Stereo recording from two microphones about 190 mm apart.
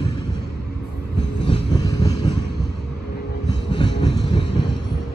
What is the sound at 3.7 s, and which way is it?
Train, 25° left (ahead or behind).